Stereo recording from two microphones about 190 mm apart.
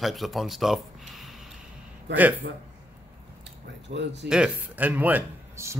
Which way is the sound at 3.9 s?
55° right (ahead or behind).